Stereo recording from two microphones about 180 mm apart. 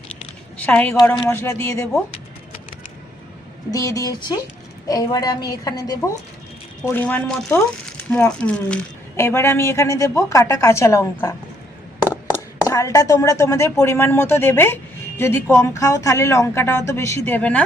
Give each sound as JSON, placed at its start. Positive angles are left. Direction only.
{"t": 0.6, "sound": "a woman's voice", "side_deg": 10}
{"t": 3.7, "sound": "a woman's voice", "side_deg": 20}
{"t": 6.8, "sound": "a woman's voice", "side_deg": 10}